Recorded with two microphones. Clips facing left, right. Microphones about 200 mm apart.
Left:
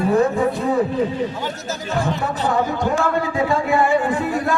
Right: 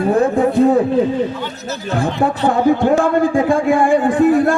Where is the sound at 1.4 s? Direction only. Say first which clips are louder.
Right 1 dB; 45° left (ahead or behind).